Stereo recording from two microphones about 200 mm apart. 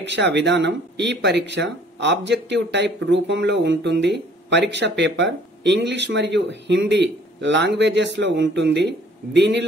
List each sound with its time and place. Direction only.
0.0 s speech: 65° right (ahead or behind)